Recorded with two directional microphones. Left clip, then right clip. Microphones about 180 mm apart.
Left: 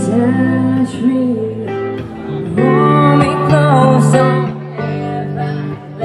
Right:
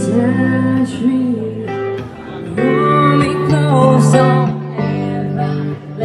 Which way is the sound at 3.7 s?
10° left (ahead or behind).